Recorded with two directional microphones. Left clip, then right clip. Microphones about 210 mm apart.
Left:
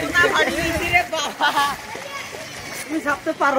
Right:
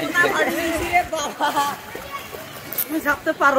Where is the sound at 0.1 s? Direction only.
45° right (ahead or behind).